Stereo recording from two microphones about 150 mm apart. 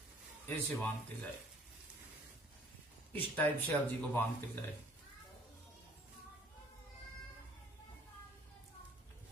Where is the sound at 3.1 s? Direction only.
10° left (ahead or behind).